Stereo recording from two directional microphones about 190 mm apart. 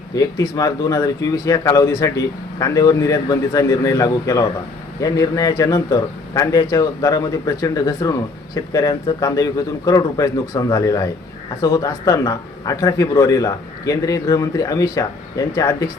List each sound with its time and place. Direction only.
0.1 s a man's voice: 20° left (ahead or behind)